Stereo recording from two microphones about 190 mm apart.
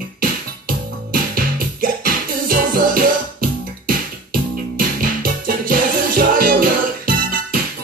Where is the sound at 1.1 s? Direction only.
50° right (ahead or behind).